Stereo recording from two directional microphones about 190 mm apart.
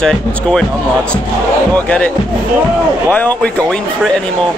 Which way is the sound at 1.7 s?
10° left (ahead or behind).